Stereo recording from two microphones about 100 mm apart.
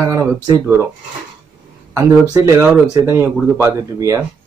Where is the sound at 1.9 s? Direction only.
35° right (ahead or behind).